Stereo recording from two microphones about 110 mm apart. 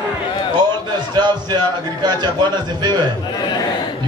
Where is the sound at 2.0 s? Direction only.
40° right (ahead or behind).